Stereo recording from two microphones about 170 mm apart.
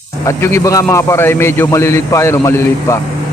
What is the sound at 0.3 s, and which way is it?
A man's voice, 15° left (ahead or behind).